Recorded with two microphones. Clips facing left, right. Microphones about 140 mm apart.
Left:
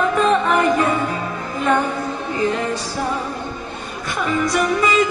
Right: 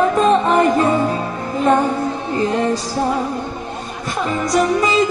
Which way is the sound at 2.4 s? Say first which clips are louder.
Right 2 dB; 35° right (ahead or behind).